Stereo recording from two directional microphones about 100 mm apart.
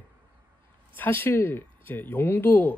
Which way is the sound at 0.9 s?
20° left (ahead or behind).